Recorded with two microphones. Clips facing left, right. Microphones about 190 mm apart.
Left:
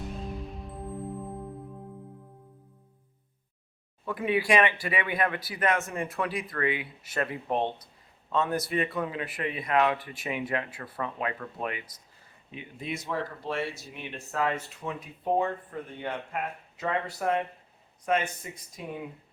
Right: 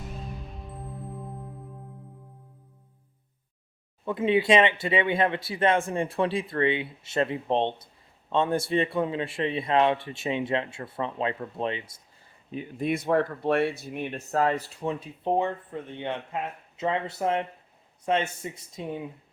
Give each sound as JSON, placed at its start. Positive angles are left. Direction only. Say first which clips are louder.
{"t": 0.0, "sound": "music", "louder": "left 3 dB", "side_deg": 0}
{"t": 4.0, "sound": "speech", "louder": "right 4 dB", "side_deg": -25}
{"t": 12.5, "sound": "speech", "louder": "right 10 dB", "side_deg": -40}
{"t": 12.9, "sound": "speech", "louder": "right 8 dB", "side_deg": -55}